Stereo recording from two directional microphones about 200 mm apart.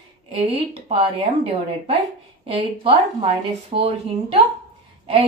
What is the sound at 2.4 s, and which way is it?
Speech, 30° right (ahead or behind).